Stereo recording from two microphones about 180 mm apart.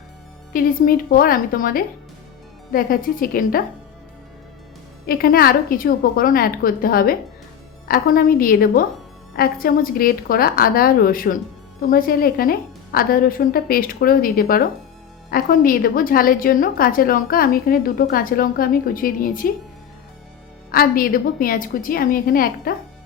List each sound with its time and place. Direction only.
0.5 s a woman's voice: 55° left (ahead or behind)
5.0 s a woman's voice: 55° left (ahead or behind)
20.7 s a woman's voice: 55° left (ahead or behind)